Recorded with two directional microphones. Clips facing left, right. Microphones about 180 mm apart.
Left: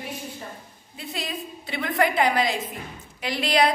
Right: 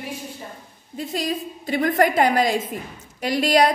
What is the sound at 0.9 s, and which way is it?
A woman's voice, 45° right (ahead or behind).